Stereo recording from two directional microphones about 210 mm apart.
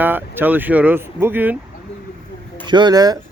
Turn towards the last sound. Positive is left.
turn(degrees=-20)  # may be behind; listen again after turning